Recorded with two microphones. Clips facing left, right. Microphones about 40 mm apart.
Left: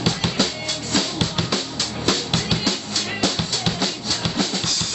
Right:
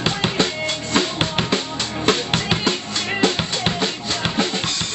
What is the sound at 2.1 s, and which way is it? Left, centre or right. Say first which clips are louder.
Drum kit: right 3 dB; right.